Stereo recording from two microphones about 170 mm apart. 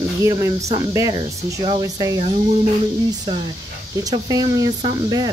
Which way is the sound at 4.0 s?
20° right (ahead or behind).